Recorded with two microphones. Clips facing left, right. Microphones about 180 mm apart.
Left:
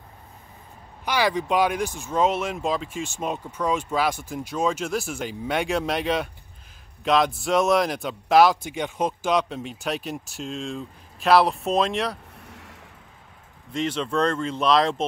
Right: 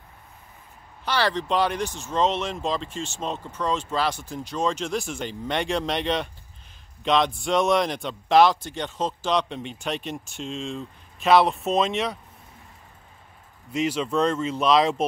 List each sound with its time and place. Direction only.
1.0 s speech: 10° left (ahead or behind)
12.4 s a sound: 80° left
13.7 s speech: 5° right (ahead or behind)